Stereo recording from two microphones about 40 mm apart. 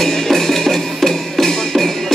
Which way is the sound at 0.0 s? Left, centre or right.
Centre.